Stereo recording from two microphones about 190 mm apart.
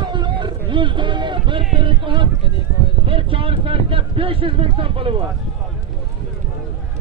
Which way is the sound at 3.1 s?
30° right (ahead or behind).